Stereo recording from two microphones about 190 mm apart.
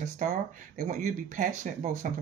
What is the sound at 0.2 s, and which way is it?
Speech, 40° right (ahead or behind).